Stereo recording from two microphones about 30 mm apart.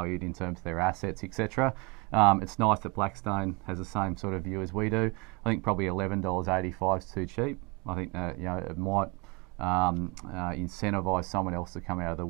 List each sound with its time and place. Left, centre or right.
0.0 s speech: centre
2.0 s speech: centre
9.9 s speech: centre